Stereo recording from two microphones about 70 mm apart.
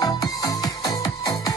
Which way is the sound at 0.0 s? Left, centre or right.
Left.